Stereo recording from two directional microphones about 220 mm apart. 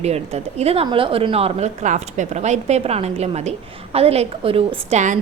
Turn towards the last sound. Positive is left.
turn(degrees=-30)  # may be behind; listen again after turning